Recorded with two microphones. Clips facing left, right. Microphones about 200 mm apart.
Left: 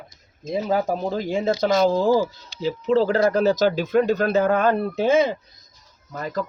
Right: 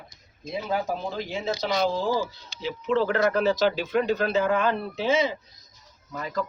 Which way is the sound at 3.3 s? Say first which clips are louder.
Left 4 dB; 40° left (ahead or behind).